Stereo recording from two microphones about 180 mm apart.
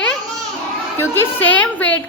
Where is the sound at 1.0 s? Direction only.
15° left (ahead or behind).